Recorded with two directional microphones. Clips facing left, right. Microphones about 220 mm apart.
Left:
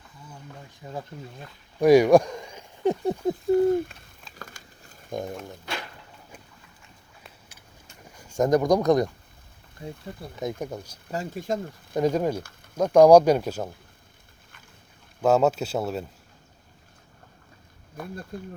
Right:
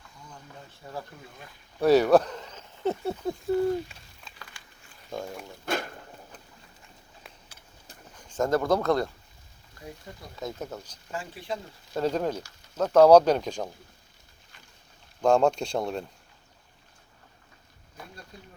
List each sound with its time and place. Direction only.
0.3 s a sound: 15° left (ahead or behind)
1.8 s speech: 15° left (ahead or behind)
3.5 s speech: 50° left (ahead or behind)
4.4 s a sound: 45° left (ahead or behind)
5.6 s a sound: 45° right (ahead or behind)
8.1 s speech: 10° left (ahead or behind)
10.6 s speech: 10° left (ahead or behind)
11.1 s speech: 40° left (ahead or behind)
11.9 s speech: 10° left (ahead or behind)
15.2 s speech: 5° left (ahead or behind)
17.9 s speech: 55° left (ahead or behind)